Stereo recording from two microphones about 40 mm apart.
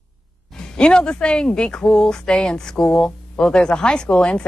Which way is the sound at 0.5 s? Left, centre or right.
Left.